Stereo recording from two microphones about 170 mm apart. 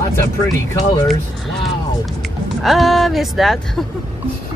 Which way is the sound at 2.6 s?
Centre (ahead or behind).